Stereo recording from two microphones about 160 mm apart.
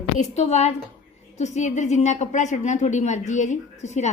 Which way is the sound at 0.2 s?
45° left (ahead or behind).